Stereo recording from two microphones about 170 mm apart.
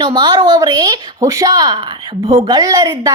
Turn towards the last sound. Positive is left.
turn(degrees=-25)  # may be behind; listen again after turning